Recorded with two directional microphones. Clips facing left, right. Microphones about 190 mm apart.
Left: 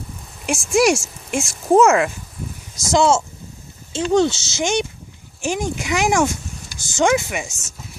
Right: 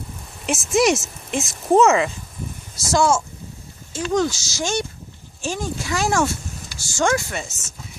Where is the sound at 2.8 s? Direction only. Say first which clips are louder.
Left 2 dB; 20° left (ahead or behind).